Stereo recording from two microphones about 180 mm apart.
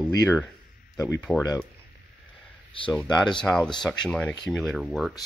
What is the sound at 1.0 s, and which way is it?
Speech, 15° left (ahead or behind).